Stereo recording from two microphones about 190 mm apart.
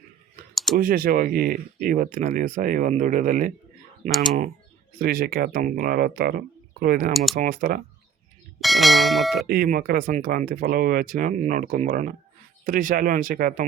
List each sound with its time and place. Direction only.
0.5 s clicking: centre (ahead or behind)
0.8 s speech: 50° right (ahead or behind)
4.9 s speech: 50° right (ahead or behind)
7.1 s speech: centre (ahead or behind)
7.3 s speech: 45° right (ahead or behind)
8.6 s speech: centre (ahead or behind)
9.5 s speech: 50° right (ahead or behind)